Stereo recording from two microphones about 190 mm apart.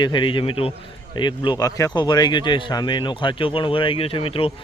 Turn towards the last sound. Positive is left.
turn(degrees=30)  # may be behind; listen again after turning